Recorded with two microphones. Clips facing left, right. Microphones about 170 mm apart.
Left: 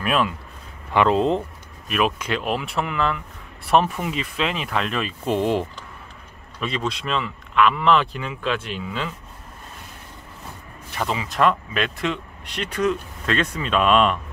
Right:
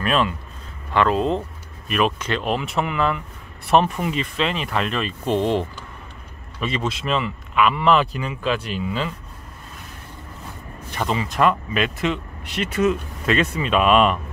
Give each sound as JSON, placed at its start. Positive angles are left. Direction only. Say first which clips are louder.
{"t": 0.0, "sound": "speech", "louder": "right 1 dB", "side_deg": 5}
{"t": 0.9, "sound": "speech", "louder": "left 1 dB", "side_deg": 20}
{"t": 1.9, "sound": "speech", "louder": "right 1 dB", "side_deg": 5}
{"t": 6.6, "sound": "speech", "louder": "right 1 dB", "side_deg": 0}
{"t": 11.0, "sound": "speech", "louder": "right 1 dB", "side_deg": 0}